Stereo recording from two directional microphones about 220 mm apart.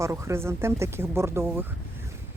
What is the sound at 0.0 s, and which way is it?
Speech, 15° right (ahead or behind).